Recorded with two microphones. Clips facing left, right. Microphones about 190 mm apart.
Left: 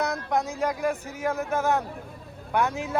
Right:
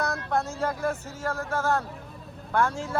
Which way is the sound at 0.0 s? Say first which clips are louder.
Left 1 dB; 20° left (ahead or behind).